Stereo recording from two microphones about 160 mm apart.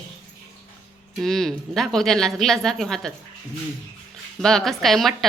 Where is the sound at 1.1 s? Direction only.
5° left (ahead or behind).